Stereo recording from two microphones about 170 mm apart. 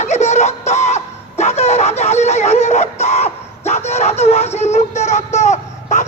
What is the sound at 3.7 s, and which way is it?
Speech, 40° left (ahead or behind).